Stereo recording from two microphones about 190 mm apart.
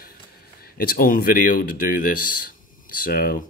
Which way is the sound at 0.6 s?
50° left (ahead or behind).